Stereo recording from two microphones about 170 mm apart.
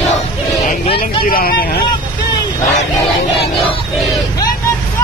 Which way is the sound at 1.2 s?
60° left (ahead or behind).